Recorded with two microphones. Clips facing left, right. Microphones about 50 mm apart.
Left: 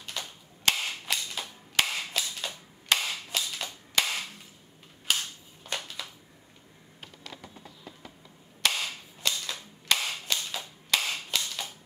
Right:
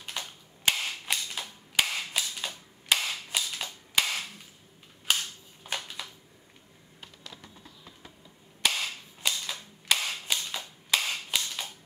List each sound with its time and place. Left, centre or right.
0.2 s cap gun: right
0.7 s cap gun: centre
3.9 s a sound: centre
5.1 s cap gun: centre
5.7 s a sound: centre
7.0 s computer keyboard: left
8.6 s cap gun: centre